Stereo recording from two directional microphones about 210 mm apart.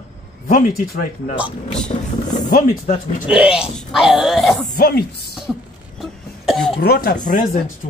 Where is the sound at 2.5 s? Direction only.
40° left (ahead or behind).